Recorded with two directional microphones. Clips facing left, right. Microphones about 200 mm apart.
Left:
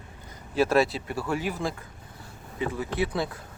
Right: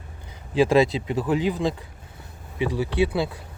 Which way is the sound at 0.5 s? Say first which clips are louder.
Right 4 dB; 15° right (ahead or behind).